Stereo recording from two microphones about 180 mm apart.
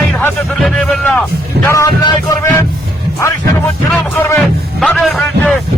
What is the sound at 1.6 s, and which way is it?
Speech, 15° left (ahead or behind).